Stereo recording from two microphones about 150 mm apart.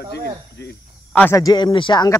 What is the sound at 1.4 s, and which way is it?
Speech, 25° left (ahead or behind).